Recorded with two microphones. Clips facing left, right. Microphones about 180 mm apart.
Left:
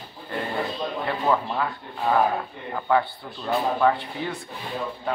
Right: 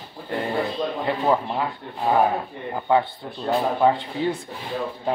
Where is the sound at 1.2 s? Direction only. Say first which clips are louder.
Right 1 dB; 20° right (ahead or behind).